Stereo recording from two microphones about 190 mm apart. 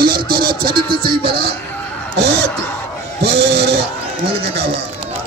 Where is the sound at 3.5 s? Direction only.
60° right (ahead or behind).